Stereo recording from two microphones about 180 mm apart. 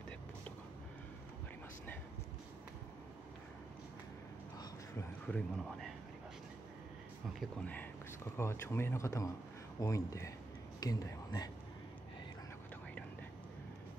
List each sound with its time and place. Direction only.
4.9 s speech: 5° left (ahead or behind)
7.3 s speech: 10° left (ahead or behind)